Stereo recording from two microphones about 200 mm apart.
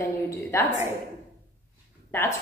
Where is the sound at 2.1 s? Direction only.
10° left (ahead or behind).